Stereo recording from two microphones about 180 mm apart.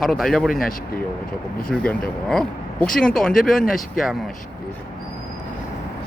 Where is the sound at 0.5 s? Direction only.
50° left (ahead or behind).